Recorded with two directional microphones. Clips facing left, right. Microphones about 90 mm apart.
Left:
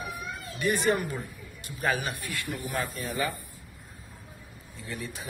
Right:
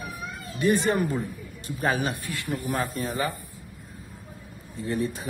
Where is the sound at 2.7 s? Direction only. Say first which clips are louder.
Right 5 dB; 35° right (ahead or behind).